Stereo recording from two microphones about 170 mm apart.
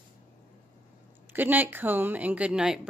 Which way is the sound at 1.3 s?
10° right (ahead or behind).